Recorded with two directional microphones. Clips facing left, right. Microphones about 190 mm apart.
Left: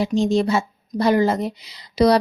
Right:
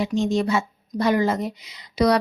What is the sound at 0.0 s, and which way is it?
Speech, 35° left (ahead or behind).